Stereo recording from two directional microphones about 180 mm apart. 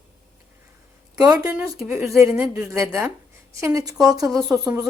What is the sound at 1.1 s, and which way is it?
A woman's voice, 20° right (ahead or behind).